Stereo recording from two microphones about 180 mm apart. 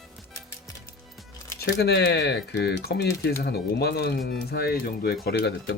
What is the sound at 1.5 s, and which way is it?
Speech, 65° left (ahead or behind).